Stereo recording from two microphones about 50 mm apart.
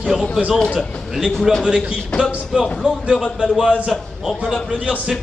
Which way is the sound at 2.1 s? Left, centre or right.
Centre.